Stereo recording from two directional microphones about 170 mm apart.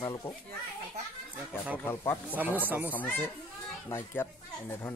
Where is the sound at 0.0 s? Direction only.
15° left (ahead or behind).